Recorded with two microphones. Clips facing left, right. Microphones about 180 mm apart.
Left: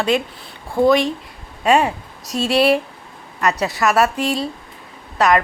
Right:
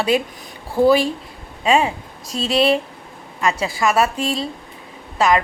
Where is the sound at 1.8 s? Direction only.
25° right (ahead or behind).